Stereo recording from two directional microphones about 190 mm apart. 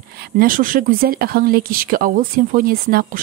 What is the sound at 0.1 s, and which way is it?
Speech, 50° right (ahead or behind).